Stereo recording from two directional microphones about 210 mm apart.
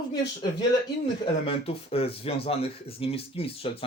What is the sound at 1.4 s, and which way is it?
Speech, 25° left (ahead or behind).